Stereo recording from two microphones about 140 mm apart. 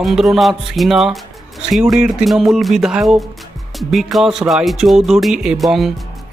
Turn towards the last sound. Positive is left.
turn(degrees=0)  # may be behind; listen again after turning